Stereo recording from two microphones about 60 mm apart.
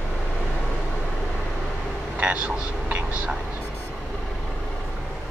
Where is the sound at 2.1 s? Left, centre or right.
Right.